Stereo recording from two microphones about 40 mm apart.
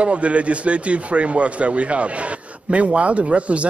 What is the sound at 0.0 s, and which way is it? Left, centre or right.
Speech, right.